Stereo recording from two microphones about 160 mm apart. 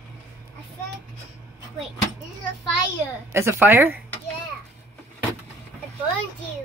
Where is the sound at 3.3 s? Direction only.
15° right (ahead or behind).